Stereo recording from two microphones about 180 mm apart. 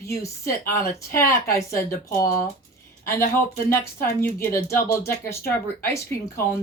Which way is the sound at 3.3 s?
15° left (ahead or behind).